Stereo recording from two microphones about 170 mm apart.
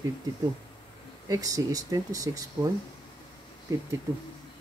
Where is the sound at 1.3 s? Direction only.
20° right (ahead or behind).